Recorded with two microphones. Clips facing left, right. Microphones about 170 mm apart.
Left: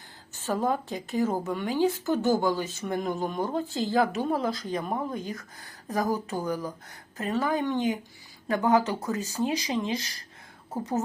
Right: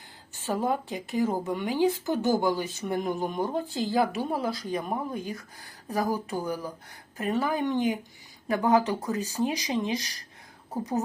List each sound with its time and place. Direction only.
0.3 s speech: 10° right (ahead or behind)